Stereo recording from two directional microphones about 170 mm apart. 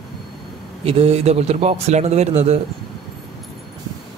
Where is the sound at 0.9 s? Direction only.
35° right (ahead or behind).